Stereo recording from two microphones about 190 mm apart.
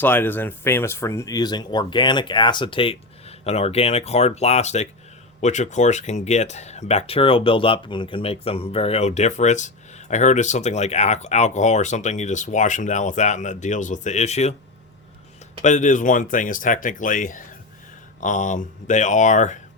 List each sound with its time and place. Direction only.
0.0 s speech: 10° left (ahead or behind); by 14.5 s 35° left (ahead or behind)
15.6 s speech: 40° left (ahead or behind)